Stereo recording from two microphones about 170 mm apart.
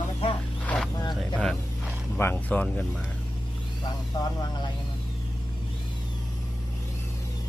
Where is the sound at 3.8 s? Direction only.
25° left (ahead or behind).